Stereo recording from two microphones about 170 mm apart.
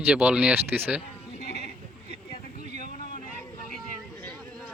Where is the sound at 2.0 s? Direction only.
65° left (ahead or behind).